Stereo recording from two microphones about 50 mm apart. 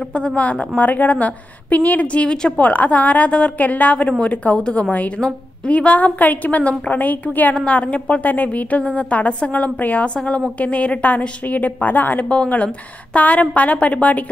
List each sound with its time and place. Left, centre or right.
0.1 s a woman's voice: left
2.6 s a woman's voice: left
5.7 s a woman's voice: left
7.5 s a woman's voice: left
10.1 s a woman's voice: centre